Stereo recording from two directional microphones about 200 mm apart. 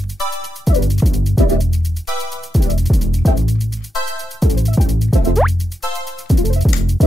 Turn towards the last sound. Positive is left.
turn(degrees=0)  # may be behind; listen again after turning